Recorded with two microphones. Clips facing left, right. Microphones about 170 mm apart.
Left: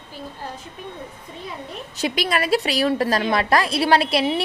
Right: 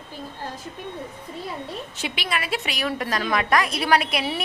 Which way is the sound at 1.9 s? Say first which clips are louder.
Left 8 dB; 40° left (ahead or behind).